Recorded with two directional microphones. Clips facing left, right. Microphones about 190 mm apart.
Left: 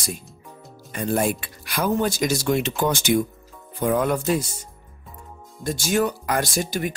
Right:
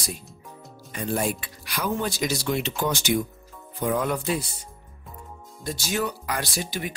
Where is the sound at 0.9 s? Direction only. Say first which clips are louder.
Left 4 dB; 50° left (ahead or behind).